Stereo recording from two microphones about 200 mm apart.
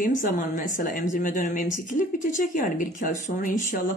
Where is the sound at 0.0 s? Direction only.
40° left (ahead or behind).